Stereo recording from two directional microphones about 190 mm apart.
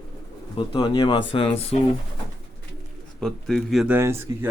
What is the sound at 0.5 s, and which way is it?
Speech, 25° left (ahead or behind).